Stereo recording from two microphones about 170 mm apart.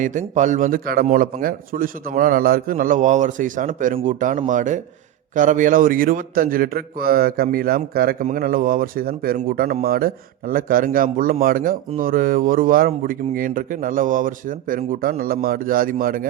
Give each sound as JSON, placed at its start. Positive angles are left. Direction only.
{"t": 0.0, "sound": "a man's voice", "side_deg": -50}